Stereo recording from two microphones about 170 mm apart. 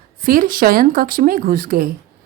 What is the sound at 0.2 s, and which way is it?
A woman's voice, 55° right (ahead or behind).